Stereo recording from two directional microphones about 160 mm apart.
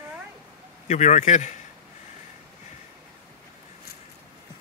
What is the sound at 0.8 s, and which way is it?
Speech, 45° left (ahead or behind).